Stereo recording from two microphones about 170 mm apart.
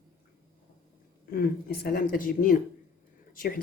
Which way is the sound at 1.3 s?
60° left (ahead or behind).